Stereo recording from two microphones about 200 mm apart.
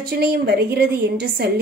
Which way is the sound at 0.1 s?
50° right (ahead or behind).